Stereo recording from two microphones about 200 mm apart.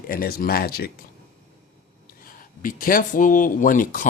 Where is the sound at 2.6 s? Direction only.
45° left (ahead or behind).